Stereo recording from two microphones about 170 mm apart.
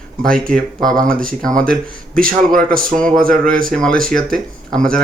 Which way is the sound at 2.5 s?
55° right (ahead or behind).